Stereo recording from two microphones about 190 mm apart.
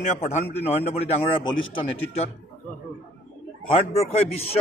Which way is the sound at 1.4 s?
90° left.